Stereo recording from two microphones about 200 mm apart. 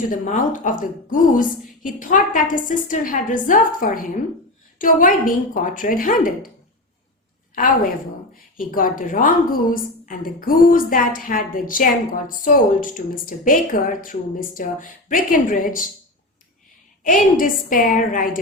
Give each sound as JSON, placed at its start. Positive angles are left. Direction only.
{"t": 0.1, "sound": "a woman's voice", "side_deg": 40}
{"t": 7.5, "sound": "a woman's voice", "side_deg": 45}
{"t": 17.0, "sound": "a woman's voice", "side_deg": 40}